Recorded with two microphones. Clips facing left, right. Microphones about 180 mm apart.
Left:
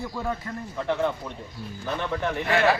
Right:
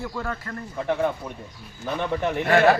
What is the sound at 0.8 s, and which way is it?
A man's voice, 15° right (ahead or behind).